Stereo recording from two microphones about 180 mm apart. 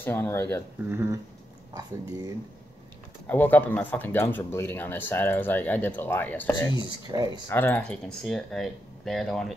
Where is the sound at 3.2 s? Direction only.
10° left (ahead or behind).